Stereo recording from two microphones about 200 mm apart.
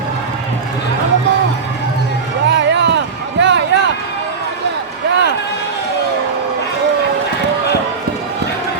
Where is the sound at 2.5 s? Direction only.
60° right (ahead or behind).